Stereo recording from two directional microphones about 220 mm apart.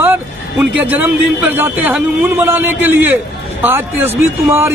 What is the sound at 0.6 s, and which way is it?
Speech, 5° right (ahead or behind).